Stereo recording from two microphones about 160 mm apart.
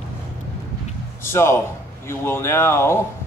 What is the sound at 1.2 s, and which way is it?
A man's voice, 15° left (ahead or behind).